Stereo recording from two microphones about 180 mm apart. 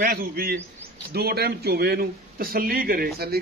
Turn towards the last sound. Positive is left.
turn(degrees=-60)  # may be behind; listen again after turning